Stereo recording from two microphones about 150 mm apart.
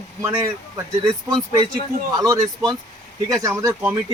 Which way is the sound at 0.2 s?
20° right (ahead or behind).